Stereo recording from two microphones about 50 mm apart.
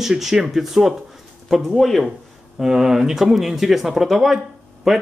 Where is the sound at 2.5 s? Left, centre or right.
Centre.